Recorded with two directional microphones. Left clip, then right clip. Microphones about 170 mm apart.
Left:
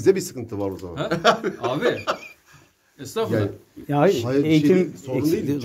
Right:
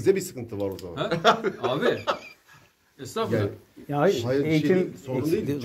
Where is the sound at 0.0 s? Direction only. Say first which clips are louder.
Left 4 dB; 45° left (ahead or behind).